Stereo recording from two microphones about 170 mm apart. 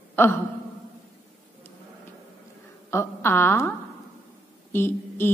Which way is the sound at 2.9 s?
15° left (ahead or behind).